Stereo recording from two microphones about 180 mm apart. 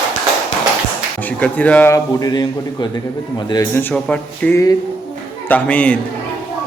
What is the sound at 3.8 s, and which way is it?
A man's voice, 5° left (ahead or behind).